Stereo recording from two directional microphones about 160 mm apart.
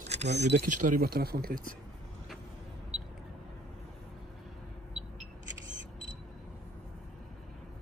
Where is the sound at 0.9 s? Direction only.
70° right (ahead or behind).